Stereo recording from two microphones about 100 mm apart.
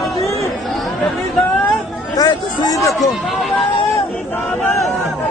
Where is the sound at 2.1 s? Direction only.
40° left (ahead or behind).